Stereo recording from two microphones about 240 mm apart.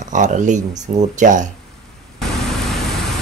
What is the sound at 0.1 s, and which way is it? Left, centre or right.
Speech, right.